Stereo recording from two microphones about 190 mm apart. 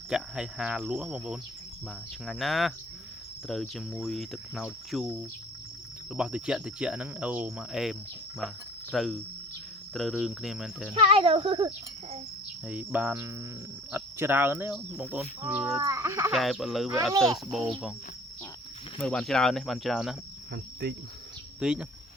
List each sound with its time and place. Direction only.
0.1 s cricket: 5° right (ahead or behind)
6.1 s cricket: 5° right (ahead or behind)
10.9 s speech: 30° right (ahead or behind)
12.6 s speech: 5° right (ahead or behind)
15.8 s speech: 15° right (ahead or behind)
16.3 s cricket: centre (ahead or behind)
18.9 s cricket: 5° left (ahead or behind)
21.6 s cricket: 5° right (ahead or behind)